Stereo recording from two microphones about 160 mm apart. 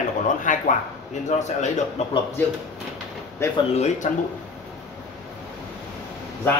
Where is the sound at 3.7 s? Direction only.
45° left (ahead or behind).